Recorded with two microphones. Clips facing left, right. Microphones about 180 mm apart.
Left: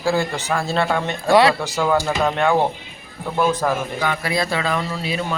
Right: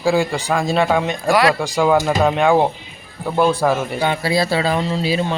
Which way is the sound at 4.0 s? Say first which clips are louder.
Right 4 dB; 30° right (ahead or behind).